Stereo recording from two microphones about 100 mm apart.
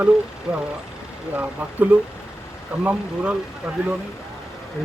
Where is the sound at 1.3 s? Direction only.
15° right (ahead or behind).